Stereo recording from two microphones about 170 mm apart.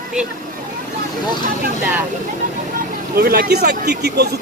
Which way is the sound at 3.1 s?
65° right (ahead or behind).